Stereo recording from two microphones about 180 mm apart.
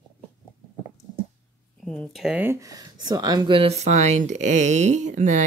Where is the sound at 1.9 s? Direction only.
Centre (ahead or behind).